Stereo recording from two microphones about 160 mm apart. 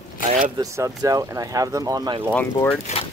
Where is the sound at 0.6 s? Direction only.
20° right (ahead or behind).